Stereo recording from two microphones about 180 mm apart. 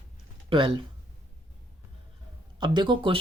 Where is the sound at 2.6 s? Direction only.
25° right (ahead or behind).